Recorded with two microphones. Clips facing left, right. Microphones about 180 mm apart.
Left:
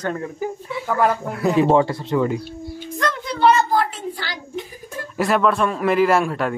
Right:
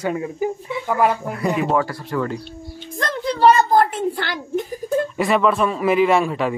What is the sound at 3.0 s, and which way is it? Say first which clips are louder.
A woman's voice: right 2 dB; 35° right (ahead or behind).